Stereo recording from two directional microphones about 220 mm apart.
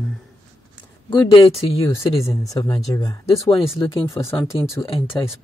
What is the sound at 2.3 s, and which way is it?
Speech, 15° left (ahead or behind).